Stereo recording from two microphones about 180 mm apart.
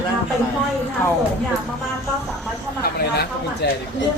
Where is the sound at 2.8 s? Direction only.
60° left (ahead or behind).